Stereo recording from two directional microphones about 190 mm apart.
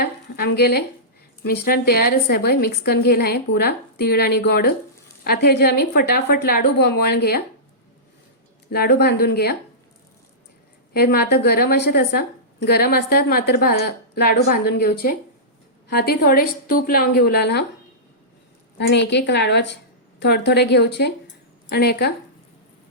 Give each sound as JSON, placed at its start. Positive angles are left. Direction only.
{"t": 0.0, "sound": "a sound", "side_deg": 55}
{"t": 1.5, "sound": "a woman's voice", "side_deg": 50}
{"t": 8.7, "sound": "a woman's voice", "side_deg": 55}
{"t": 10.9, "sound": "a woman's voice", "side_deg": 55}
{"t": 18.8, "sound": "a woman's voice", "side_deg": 65}